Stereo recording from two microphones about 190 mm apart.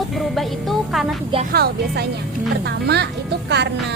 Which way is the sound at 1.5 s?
60° right (ahead or behind).